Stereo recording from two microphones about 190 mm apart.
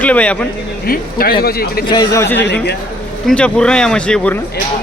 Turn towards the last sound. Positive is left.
turn(degrees=5)  # may be behind; listen again after turning